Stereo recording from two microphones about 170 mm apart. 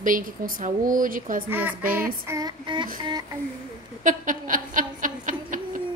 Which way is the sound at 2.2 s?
20° right (ahead or behind).